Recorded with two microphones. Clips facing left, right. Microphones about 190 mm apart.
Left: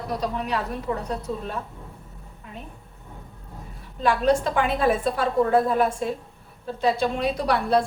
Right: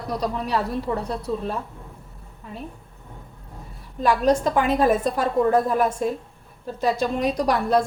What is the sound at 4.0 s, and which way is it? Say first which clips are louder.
A woman's voice: right 1 dB; 40° right (ahead or behind).